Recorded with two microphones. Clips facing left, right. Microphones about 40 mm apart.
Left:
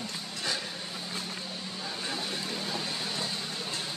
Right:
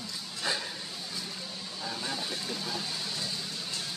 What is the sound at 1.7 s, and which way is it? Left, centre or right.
Vehicle, centre.